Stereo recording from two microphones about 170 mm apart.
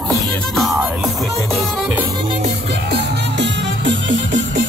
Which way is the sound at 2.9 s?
90° right.